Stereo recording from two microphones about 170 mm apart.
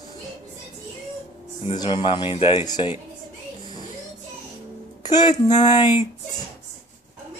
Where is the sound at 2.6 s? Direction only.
25° left (ahead or behind).